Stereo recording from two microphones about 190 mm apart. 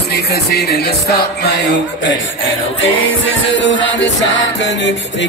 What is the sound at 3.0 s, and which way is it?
Music, 85° left.